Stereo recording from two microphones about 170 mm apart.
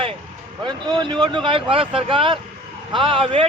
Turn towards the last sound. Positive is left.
turn(degrees=-30)  # may be behind; listen again after turning